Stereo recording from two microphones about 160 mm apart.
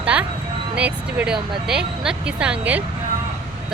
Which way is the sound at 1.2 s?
5° right (ahead or behind).